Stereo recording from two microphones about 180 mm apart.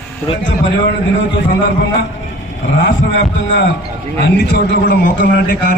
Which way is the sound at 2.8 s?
75° left (ahead or behind).